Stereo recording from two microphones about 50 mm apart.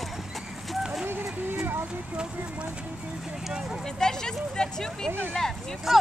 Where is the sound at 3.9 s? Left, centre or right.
Centre.